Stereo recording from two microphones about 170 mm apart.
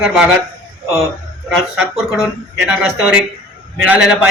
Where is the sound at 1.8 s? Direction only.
5° right (ahead or behind).